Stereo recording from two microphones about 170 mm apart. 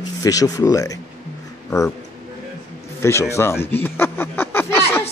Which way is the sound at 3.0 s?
15° left (ahead or behind).